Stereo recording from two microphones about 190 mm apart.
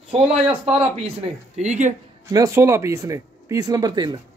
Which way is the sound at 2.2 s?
15° right (ahead or behind).